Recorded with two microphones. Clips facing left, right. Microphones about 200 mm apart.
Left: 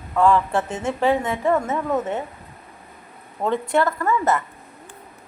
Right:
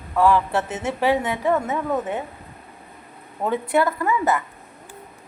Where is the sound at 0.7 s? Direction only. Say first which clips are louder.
Left 1 dB; 20° right (ahead or behind).